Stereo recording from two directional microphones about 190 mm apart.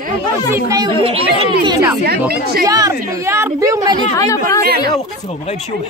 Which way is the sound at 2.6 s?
20° right (ahead or behind).